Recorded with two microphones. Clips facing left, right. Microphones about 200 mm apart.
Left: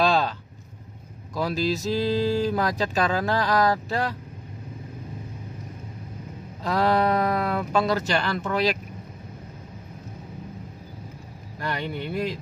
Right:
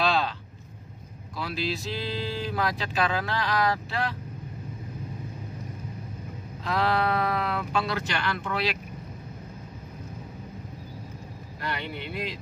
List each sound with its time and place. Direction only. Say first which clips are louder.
0.0 s a sound: left 4 dB; 45° left (ahead or behind)
1.3 s speech: left 6 dB; 40° left (ahead or behind)
6.6 s speech: left 4 dB; 40° left (ahead or behind)
11.6 s speech: left 4 dB; 45° left (ahead or behind)